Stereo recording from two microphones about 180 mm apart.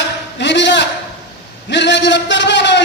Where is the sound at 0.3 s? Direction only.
80° left.